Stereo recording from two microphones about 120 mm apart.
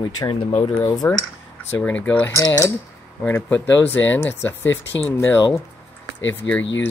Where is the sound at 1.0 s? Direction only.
20° left (ahead or behind).